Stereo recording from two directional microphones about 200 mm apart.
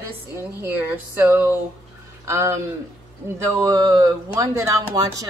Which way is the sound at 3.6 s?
20° right (ahead or behind).